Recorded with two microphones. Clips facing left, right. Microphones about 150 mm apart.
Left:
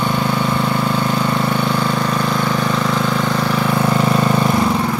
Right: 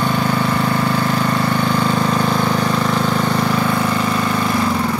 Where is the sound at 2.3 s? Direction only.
15° right (ahead or behind).